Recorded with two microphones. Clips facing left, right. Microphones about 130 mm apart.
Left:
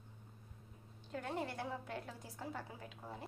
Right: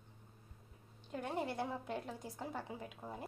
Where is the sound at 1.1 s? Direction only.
15° right (ahead or behind).